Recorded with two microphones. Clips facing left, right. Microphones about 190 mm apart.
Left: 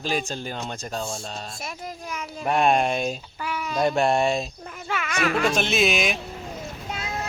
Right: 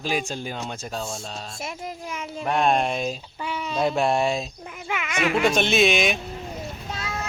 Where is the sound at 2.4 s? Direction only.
5° left (ahead or behind).